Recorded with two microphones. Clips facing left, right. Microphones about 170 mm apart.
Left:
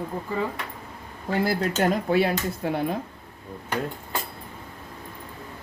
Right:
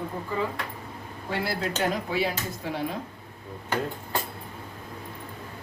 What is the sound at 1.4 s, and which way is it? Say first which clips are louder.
Speech: left 5 dB; 50° left (ahead or behind).